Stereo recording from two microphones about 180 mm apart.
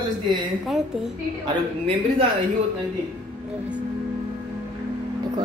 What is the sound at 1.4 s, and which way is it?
Speech, 30° right (ahead or behind).